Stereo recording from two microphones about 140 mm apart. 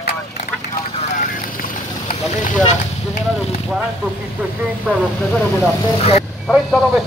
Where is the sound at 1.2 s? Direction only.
80° left; by 3.2 s 60° left (ahead or behind).